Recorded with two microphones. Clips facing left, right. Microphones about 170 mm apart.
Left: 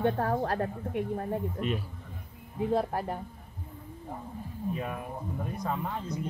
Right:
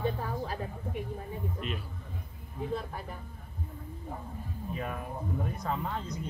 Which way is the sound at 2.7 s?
80° left.